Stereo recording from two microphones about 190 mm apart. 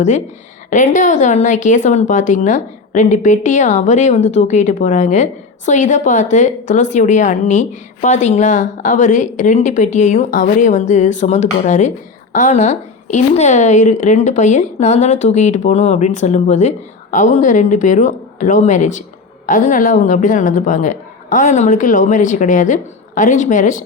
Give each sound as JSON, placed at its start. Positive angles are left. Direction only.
{"t": 0.7, "sound": "a woman's voice", "side_deg": 40}